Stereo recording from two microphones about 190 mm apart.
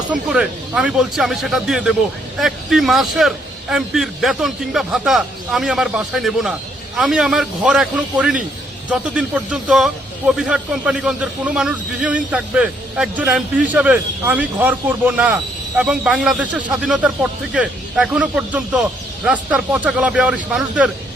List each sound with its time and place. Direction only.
0.1 s a man's voice: 5° right (ahead or behind)